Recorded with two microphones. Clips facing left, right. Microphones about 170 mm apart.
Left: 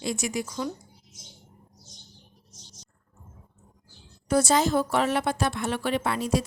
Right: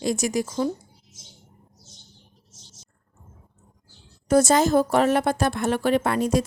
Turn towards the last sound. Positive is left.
turn(degrees=-50)  # may be behind; listen again after turning